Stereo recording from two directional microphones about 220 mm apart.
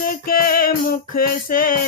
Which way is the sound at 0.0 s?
40° left (ahead or behind).